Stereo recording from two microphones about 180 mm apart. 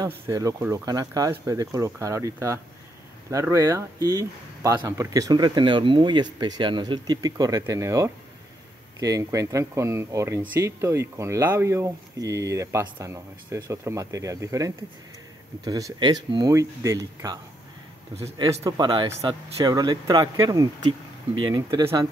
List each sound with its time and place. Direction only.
0.0 s speech: 20° right (ahead or behind)
18.4 s speech: 20° right (ahead or behind)